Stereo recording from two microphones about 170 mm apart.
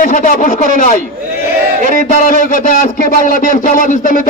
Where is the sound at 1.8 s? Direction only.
50° left (ahead or behind).